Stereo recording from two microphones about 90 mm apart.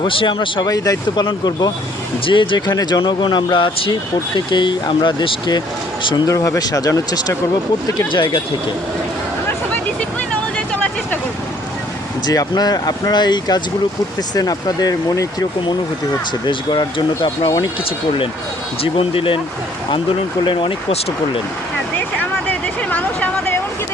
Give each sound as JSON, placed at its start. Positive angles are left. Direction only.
{"t": 0.0, "sound": "speech", "side_deg": 65}
{"t": 2.2, "sound": "speech", "side_deg": 65}
{"t": 3.0, "sound": "speech", "side_deg": 60}
{"t": 5.5, "sound": "speech", "side_deg": 60}
{"t": 6.2, "sound": "speech", "side_deg": 40}
{"t": 12.2, "sound": "speech", "side_deg": 45}
{"t": 16.5, "sound": "speech", "side_deg": 55}
{"t": 18.8, "sound": "speech", "side_deg": 90}
{"t": 20.4, "sound": "speech", "side_deg": 65}
{"t": 21.9, "sound": "vehicle", "side_deg": 20}